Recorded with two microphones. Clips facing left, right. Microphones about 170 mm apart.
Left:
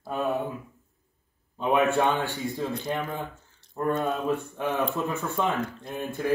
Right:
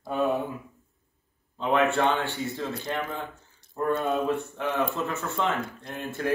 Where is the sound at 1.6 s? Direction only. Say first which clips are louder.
Left 1 dB; 15° left (ahead or behind).